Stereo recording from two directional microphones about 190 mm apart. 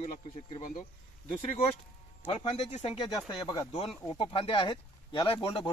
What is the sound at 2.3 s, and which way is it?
Speech, 30° left (ahead or behind).